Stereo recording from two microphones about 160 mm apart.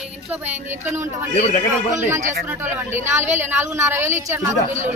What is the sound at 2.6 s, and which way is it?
A woman's voice, 15° right (ahead or behind).